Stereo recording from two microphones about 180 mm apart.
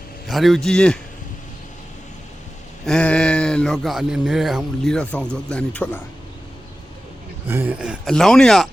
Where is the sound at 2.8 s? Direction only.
5° left (ahead or behind).